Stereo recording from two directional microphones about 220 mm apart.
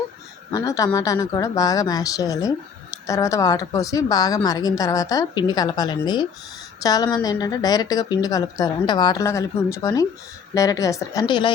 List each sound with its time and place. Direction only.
0.5 s a woman's voice: 15° left (ahead or behind)